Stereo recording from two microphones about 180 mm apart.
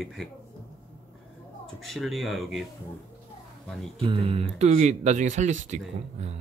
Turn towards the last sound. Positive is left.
turn(degrees=-45)  # may be behind; listen again after turning